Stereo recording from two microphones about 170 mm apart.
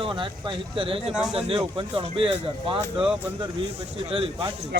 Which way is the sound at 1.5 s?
30° right (ahead or behind).